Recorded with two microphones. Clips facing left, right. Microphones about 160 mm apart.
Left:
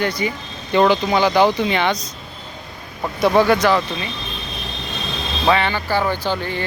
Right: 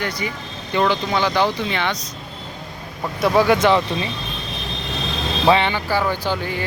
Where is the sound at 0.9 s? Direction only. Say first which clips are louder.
Left 4 dB; 15° left (ahead or behind).